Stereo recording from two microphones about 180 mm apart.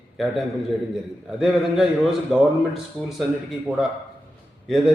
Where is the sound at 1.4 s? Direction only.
Centre (ahead or behind).